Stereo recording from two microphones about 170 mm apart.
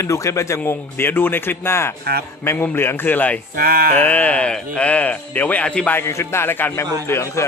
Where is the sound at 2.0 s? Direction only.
65° right (ahead or behind).